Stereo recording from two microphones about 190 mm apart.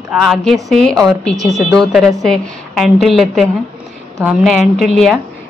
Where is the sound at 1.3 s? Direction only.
15° right (ahead or behind).